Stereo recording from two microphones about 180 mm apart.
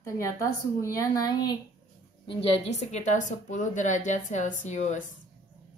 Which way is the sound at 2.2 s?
30° left (ahead or behind).